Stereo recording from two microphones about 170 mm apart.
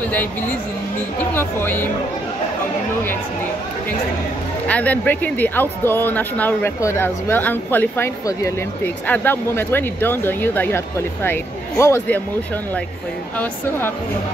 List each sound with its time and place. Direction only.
1.3 s speech: 10° left (ahead or behind)
4.6 s speech: 10° left (ahead or behind)
13.4 s speech: 15° left (ahead or behind)